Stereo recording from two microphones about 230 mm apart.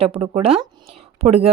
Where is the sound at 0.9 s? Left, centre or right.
Right.